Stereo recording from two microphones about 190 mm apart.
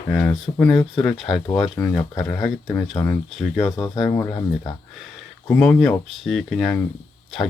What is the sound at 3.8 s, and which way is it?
Speech, 25° left (ahead or behind).